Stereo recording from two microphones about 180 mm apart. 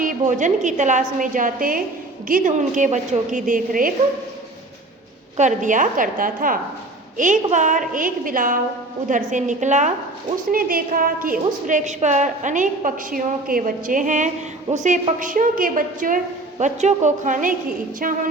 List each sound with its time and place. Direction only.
0.0 s a woman's voice: 45° right (ahead or behind)
5.4 s a woman's voice: 45° right (ahead or behind)